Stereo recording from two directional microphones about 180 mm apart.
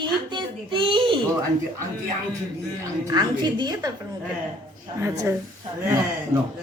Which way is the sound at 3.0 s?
20° right (ahead or behind).